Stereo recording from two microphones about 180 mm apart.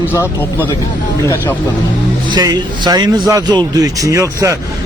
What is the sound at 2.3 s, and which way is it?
Speech, 25° right (ahead or behind).